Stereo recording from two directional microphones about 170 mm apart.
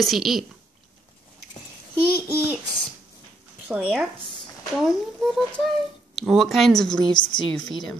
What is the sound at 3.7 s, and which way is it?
Speech, 10° right (ahead or behind).